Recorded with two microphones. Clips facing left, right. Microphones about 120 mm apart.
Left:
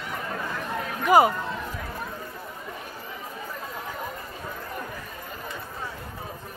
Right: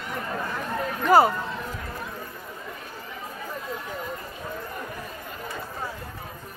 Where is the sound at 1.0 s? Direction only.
15° left (ahead or behind).